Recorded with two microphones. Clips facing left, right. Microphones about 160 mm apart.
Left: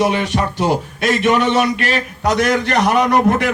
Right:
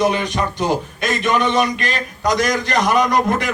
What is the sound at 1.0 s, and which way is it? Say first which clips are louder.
A man's voice: left 5 dB; 70° left (ahead or behind).